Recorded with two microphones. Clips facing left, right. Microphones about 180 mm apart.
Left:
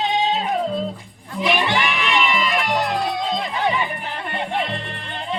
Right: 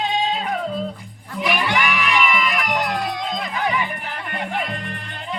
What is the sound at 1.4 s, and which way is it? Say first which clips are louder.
Music: left 1 dB; 25° left (ahead or behind).